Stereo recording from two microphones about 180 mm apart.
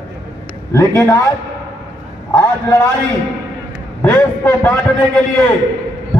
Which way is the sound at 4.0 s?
10° left (ahead or behind).